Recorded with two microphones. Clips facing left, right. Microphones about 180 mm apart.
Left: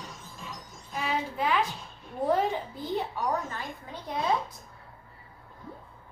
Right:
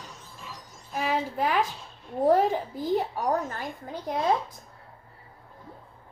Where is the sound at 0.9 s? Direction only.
45° right (ahead or behind).